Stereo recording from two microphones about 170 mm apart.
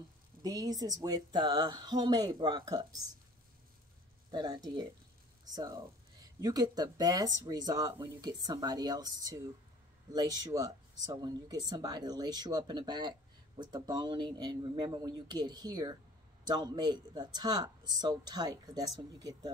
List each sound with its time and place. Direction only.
0.4 s speech: 20° right (ahead or behind)
4.3 s speech: 25° right (ahead or behind)